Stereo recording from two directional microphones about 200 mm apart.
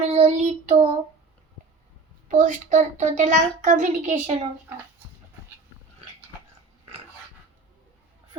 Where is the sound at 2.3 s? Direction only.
40° right (ahead or behind).